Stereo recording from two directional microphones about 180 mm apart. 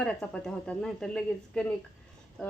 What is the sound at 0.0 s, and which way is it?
Speech, 5° left (ahead or behind).